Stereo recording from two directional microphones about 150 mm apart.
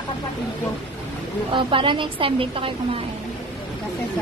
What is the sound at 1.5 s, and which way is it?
A woman's voice, 35° right (ahead or behind).